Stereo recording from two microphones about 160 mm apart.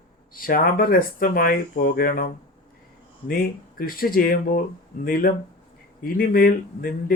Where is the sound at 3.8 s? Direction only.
65° left (ahead or behind).